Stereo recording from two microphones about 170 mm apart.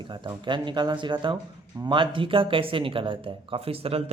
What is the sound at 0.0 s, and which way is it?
Speech, 25° right (ahead or behind).